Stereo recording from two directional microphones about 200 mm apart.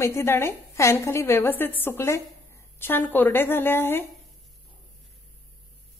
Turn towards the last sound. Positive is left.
turn(degrees=10)  # may be behind; listen again after turning